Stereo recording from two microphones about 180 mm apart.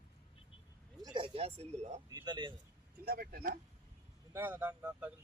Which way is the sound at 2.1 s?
20° right (ahead or behind).